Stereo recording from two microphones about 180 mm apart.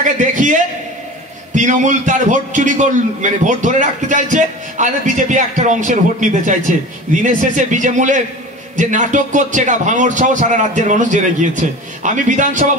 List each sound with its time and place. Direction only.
0.0 s a man's voice: 45° right (ahead or behind)